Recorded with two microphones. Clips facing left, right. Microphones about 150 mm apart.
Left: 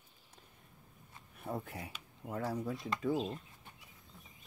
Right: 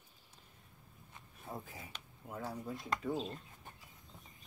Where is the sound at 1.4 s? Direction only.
65° left (ahead or behind).